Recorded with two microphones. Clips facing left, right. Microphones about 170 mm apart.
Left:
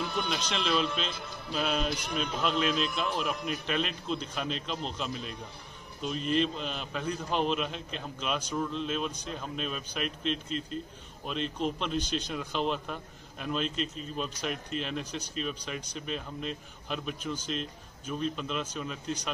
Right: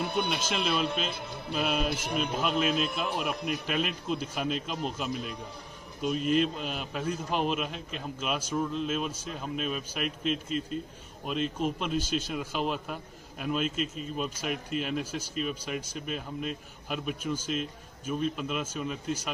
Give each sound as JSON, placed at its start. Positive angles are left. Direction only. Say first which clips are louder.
{"t": 0.0, "sound": "speech", "louder": "right 3 dB", "side_deg": -60}
{"t": 0.4, "sound": "speech", "louder": "even", "side_deg": -5}
{"t": 1.9, "sound": "a man's voice", "louder": "right 2 dB", "side_deg": -50}
{"t": 2.3, "sound": "a man's voice", "louder": "even", "side_deg": -5}